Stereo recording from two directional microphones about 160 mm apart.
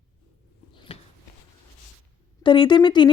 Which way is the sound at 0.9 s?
35° left (ahead or behind).